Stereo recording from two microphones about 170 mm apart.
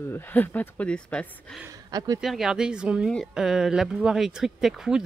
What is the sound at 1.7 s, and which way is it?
Speech, 20° right (ahead or behind).